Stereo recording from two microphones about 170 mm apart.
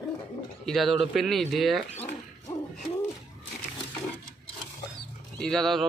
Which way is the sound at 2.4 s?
20° left (ahead or behind).